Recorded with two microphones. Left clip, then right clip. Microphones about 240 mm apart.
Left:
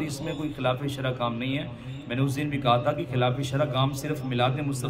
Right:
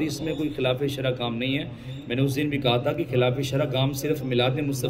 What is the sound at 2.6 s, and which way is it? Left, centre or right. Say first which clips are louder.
Speech: left 2 dB; left.